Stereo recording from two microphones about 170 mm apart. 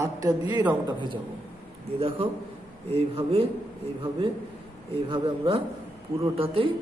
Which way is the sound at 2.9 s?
35° right (ahead or behind).